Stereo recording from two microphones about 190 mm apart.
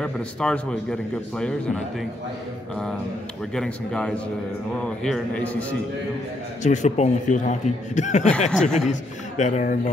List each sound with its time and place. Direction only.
0.0 s a man's voice: 5° left (ahead or behind)
3.5 s a man's voice: 5° left (ahead or behind)
6.6 s speech: 40° left (ahead or behind)
8.5 s a man's voice: 5° left (ahead or behind)
9.4 s speech: 40° left (ahead or behind)